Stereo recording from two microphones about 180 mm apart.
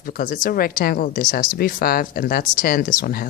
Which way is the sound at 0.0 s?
50° left (ahead or behind).